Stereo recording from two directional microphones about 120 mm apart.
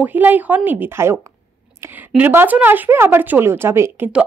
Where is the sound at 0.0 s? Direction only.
15° right (ahead or behind).